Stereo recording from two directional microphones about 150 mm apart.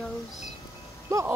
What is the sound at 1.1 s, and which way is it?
Speech, 20° right (ahead or behind).